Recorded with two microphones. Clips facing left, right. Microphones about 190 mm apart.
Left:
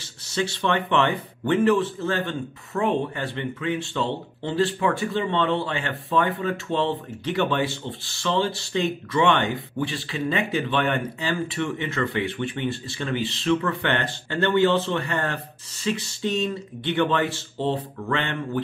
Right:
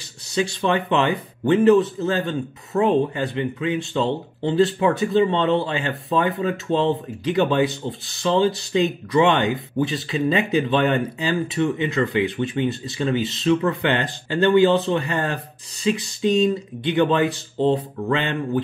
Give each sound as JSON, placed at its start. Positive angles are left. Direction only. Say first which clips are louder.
{"t": 0.3, "sound": "speech", "louder": "right 3 dB", "side_deg": -15}